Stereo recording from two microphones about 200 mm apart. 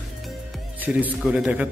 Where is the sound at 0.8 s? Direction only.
5° right (ahead or behind).